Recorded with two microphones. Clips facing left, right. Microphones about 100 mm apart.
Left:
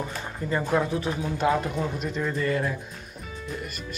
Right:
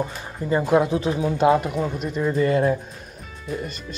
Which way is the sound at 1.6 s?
5° right (ahead or behind).